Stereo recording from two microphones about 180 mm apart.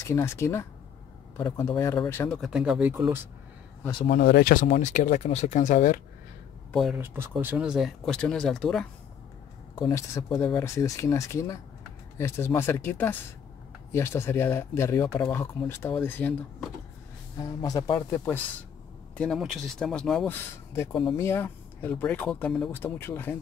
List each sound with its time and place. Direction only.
0.0 s speech: 15° left (ahead or behind); by 3.2 s 10° right (ahead or behind)
4.1 s speech: 60° left (ahead or behind)
4.6 s speech: 40° left (ahead or behind)
6.7 s speech: centre (ahead or behind)
7.0 s speech: 10° right (ahead or behind)
9.8 s speech: 20° left (ahead or behind)
17.4 s speech: 20° left (ahead or behind)
19.1 s speech: 5° left (ahead or behind)
20.3 s speech: 15° left (ahead or behind)
20.9 s speech: 30° left (ahead or behind)
21.2 s speech: 15° left (ahead or behind)